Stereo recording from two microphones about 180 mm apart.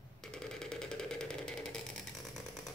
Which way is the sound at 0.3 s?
5° left (ahead or behind).